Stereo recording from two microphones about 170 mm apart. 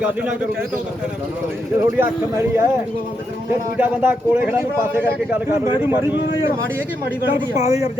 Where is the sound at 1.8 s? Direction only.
15° right (ahead or behind).